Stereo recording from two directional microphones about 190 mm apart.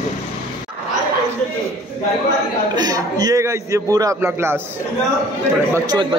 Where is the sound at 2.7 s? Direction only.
20° right (ahead or behind).